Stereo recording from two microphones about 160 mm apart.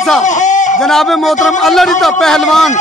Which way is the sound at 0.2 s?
50° left (ahead or behind).